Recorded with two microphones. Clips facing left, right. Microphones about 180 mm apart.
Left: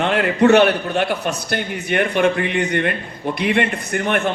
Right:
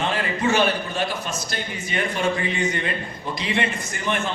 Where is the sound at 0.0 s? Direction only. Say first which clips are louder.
Left 8 dB; 65° left (ahead or behind).